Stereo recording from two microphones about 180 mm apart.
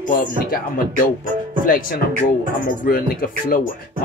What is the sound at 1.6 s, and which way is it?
Music, 50° left (ahead or behind).